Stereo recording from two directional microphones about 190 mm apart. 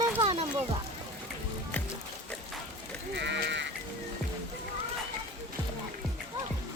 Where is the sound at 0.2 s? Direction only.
35° right (ahead or behind).